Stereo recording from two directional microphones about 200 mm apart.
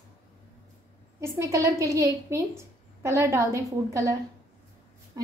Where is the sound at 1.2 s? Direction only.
15° right (ahead or behind).